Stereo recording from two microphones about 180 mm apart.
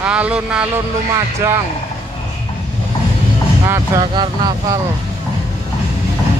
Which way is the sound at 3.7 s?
25° right (ahead or behind).